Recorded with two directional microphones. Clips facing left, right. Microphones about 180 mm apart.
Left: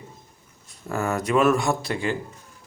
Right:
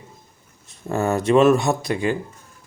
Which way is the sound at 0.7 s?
25° right (ahead or behind).